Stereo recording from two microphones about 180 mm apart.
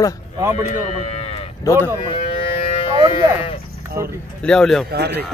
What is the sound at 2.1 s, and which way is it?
Cattle, 30° left (ahead or behind).